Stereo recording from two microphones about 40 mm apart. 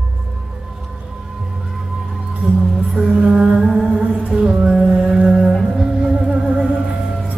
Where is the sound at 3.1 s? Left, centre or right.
Right.